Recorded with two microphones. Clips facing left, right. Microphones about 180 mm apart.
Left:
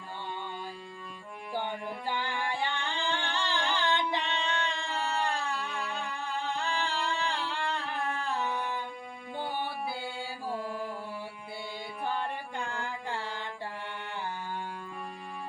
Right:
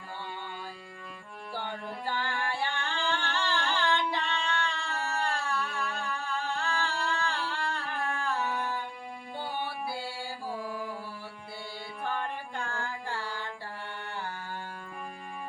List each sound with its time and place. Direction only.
1.5 s music: 15° left (ahead or behind)
12.0 s music: 15° left (ahead or behind)